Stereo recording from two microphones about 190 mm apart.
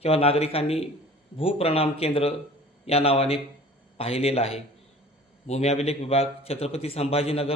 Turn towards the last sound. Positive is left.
turn(degrees=30)  # may be behind; listen again after turning